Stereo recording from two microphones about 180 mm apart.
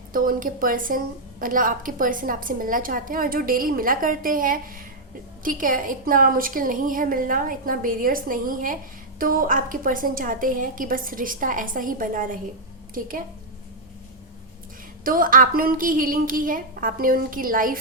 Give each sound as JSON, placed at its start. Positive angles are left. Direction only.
{"t": 0.1, "sound": "a woman's voice", "side_deg": -50}
{"t": 15.0, "sound": "a woman's voice", "side_deg": -50}